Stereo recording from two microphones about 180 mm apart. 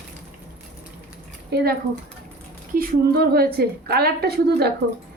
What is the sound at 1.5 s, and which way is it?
A woman's voice, 60° right (ahead or behind).